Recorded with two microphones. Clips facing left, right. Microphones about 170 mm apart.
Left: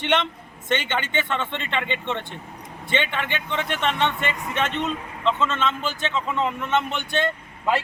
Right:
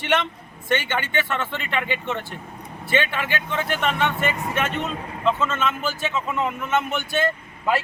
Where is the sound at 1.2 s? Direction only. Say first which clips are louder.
Even; 5° right (ahead or behind).